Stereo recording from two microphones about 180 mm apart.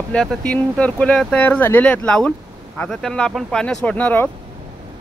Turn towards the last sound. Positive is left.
turn(degrees=10)  # may be behind; listen again after turning